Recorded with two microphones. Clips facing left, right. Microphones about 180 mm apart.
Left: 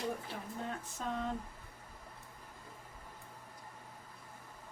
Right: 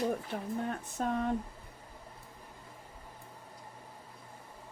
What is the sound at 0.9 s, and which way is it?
Speech, 55° right (ahead or behind).